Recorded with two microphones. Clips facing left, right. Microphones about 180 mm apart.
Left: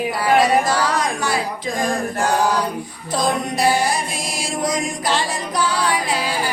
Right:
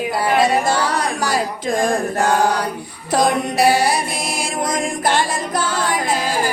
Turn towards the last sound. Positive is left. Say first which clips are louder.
# even
turn(degrees=-45)  # may be behind; listen again after turning